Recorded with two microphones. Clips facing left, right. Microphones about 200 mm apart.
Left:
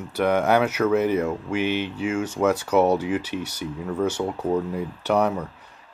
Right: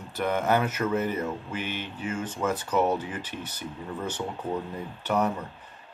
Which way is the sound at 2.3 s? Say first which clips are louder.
Left 8 dB; 85° left.